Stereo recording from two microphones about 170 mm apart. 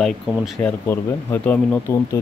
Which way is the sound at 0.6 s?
10° left (ahead or behind).